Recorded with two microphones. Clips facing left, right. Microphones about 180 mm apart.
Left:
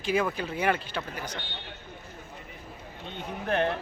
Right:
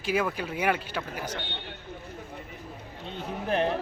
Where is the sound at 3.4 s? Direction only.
5° right (ahead or behind).